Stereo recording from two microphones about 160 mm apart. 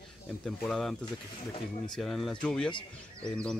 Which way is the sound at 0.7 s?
Centre (ahead or behind).